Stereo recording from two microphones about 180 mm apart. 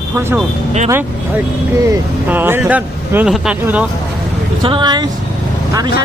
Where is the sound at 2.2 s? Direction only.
10° right (ahead or behind).